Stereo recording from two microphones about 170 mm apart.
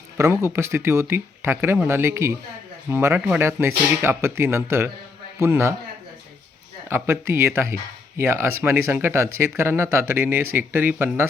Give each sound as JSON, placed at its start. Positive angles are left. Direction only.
{"t": 0.2, "sound": "speech", "side_deg": -15}
{"t": 6.8, "sound": "speech", "side_deg": -15}